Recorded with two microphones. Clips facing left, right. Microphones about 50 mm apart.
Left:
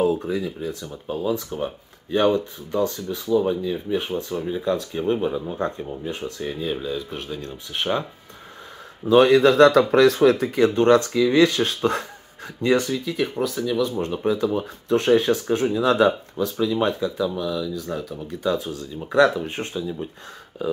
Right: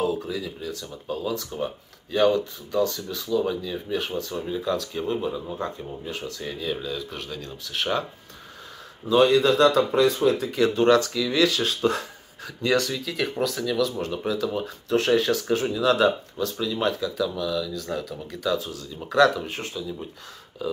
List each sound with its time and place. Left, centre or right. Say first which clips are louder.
0.0 s speech: left 5 dB; left; by 4.7 s centre
5.0 s speech: left 4 dB; left
9.1 s speech: left 4 dB; left
10.4 s speech: left 3 dB; left
12.7 s speech: left 2 dB; left
14.0 s speech: left 4 dB; left
17.3 s speech: left 2 dB; centre
18.4 s speech: left 2 dB; left
19.0 s speech: left 1 dB; left
20.6 s speech: left 4 dB; left